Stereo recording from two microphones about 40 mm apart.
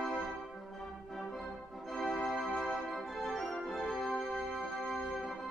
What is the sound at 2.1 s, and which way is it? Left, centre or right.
Organ, centre.